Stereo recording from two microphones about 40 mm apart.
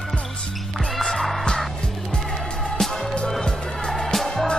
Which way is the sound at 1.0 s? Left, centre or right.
Centre.